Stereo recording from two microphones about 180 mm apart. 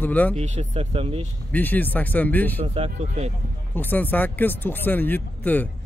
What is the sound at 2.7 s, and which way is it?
Speech, 35° right (ahead or behind).